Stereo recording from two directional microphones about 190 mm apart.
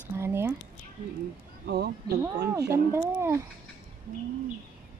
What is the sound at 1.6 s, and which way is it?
Speech, 60° right (ahead or behind).